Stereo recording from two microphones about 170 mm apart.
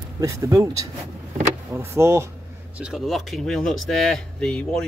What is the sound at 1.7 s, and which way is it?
Speech, 15° right (ahead or behind).